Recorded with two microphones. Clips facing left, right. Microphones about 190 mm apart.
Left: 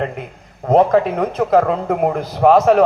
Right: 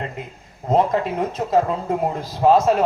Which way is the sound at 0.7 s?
65° left (ahead or behind).